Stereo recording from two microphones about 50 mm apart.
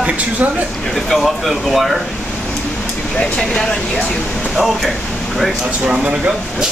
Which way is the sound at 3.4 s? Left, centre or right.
Centre.